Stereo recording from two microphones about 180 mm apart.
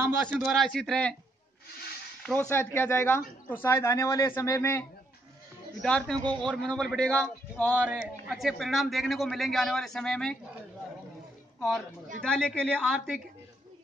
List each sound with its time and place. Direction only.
0.0 s a man's voice: 10° right (ahead or behind); by 1.1 s 5° left (ahead or behind)
2.5 s a man's voice: 10° left (ahead or behind)
6.1 s a man's voice: 25° right (ahead or behind)
6.6 s speech: 5° left (ahead or behind)
7.7 s a man's voice: 10° right (ahead or behind)
12.2 s a man's voice: 5° left (ahead or behind)